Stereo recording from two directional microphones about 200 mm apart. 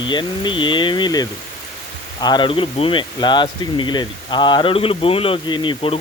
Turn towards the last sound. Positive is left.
turn(degrees=25)  # may be behind; listen again after turning